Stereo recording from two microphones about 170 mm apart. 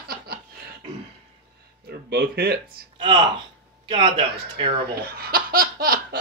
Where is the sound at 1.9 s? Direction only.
60° right (ahead or behind).